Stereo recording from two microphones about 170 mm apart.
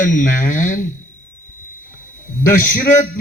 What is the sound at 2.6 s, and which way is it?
Speech, 50° left (ahead or behind).